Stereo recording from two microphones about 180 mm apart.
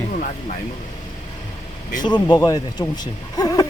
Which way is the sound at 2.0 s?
25° left (ahead or behind).